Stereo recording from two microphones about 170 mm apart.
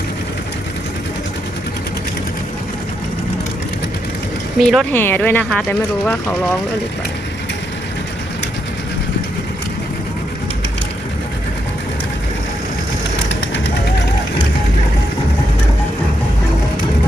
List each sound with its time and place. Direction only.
4.5 s speech: centre (ahead or behind)
4.9 s speech: 10° left (ahead or behind)
13.2 s vehicle: 90° left